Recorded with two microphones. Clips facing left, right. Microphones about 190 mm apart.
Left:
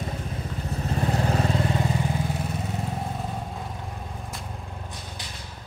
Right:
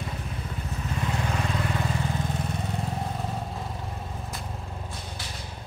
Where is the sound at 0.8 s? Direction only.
40° left (ahead or behind).